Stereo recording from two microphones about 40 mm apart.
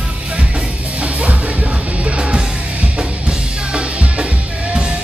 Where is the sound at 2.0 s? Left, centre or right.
Right.